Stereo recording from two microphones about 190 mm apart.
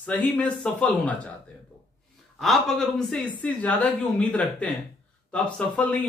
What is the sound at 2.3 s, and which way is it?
A woman's voice, centre (ahead or behind).